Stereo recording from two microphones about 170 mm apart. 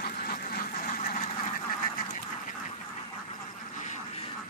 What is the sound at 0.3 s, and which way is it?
Duck, 60° left (ahead or behind).